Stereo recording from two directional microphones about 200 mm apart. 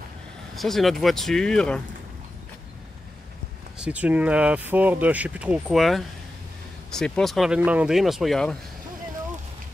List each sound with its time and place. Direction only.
0.6 s speech: centre (ahead or behind)
3.7 s speech: 5° right (ahead or behind)